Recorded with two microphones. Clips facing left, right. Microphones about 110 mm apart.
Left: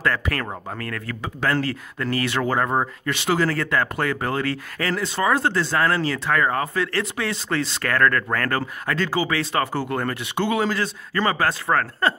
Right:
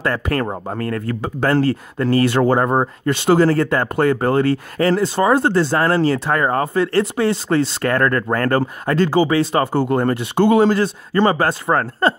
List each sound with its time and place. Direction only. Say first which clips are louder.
0.0 s speech: right 4 dB; 30° right (ahead or behind)